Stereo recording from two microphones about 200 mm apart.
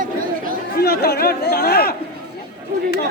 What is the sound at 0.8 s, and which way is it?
Speech, 50° left (ahead or behind).